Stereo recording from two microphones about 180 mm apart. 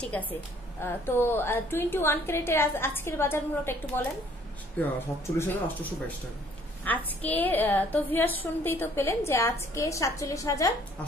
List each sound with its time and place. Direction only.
0.0 s a woman's voice: 10° left (ahead or behind)